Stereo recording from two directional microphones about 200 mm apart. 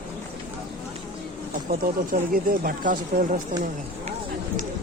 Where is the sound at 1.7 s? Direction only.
40° right (ahead or behind).